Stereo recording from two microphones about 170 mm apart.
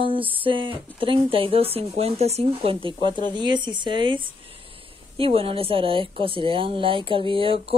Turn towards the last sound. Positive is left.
turn(degrees=-30)  # may be behind; listen again after turning